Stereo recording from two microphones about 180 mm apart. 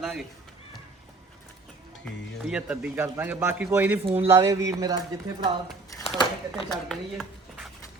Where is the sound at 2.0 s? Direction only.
5° right (ahead or behind).